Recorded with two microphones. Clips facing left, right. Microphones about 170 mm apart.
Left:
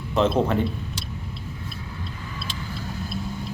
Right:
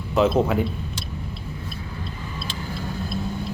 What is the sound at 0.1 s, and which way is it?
Speech, 5° right (ahead or behind).